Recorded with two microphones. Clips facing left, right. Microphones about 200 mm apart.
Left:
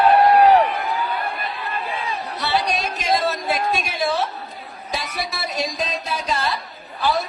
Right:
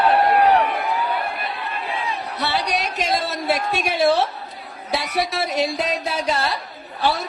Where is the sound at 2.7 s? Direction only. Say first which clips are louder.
Left 1 dB; 65° right (ahead or behind).